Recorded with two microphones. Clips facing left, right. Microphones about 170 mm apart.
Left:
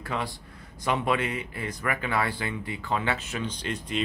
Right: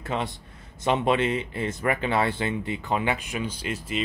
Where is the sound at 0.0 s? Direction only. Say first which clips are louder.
Right 2 dB; 25° right (ahead or behind).